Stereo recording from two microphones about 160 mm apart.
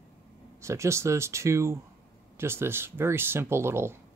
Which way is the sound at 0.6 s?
15° right (ahead or behind).